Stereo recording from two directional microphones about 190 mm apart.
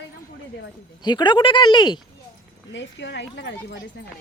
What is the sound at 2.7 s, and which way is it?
Speech, 75° left (ahead or behind).